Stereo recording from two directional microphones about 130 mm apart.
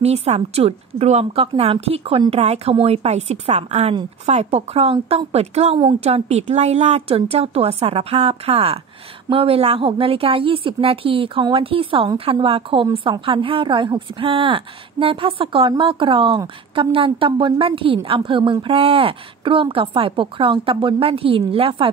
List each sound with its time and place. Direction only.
0.0 s a woman's voice: 55° right (ahead or behind)